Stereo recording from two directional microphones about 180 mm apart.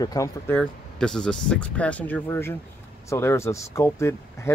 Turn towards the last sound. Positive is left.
turn(degrees=15)  # may be behind; listen again after turning